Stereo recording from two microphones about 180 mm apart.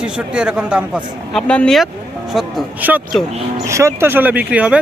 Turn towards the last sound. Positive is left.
turn(degrees=-5)  # may be behind; listen again after turning